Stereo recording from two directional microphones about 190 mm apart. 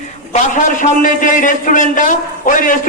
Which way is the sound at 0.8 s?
45° left (ahead or behind).